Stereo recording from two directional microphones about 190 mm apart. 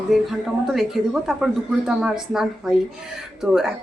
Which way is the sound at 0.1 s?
Centre (ahead or behind).